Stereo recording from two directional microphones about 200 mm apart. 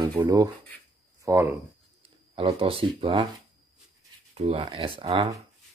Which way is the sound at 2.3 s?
25° right (ahead or behind).